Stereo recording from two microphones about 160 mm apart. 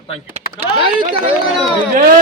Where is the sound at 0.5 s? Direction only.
30° right (ahead or behind).